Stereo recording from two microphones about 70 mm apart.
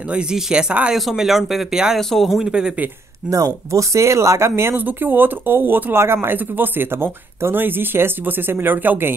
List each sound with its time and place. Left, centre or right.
0.1 s speech: centre
3.3 s speech: right
4.7 s speech: right